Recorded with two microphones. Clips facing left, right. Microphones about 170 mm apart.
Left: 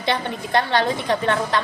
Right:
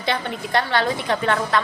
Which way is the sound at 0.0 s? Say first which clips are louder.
Left 1 dB; 20° left (ahead or behind).